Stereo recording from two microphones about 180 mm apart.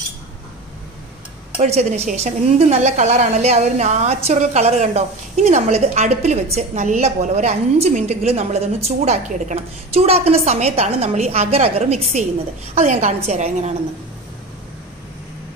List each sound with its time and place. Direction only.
1.6 s a woman's voice: 40° right (ahead or behind)